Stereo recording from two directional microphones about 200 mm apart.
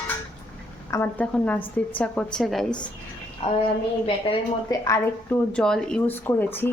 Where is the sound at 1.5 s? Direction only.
25° left (ahead or behind).